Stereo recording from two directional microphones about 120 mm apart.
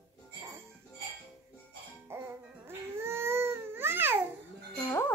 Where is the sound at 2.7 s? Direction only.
20° right (ahead or behind).